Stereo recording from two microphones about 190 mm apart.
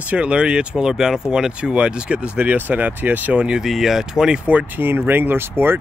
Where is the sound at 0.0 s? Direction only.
5° right (ahead or behind).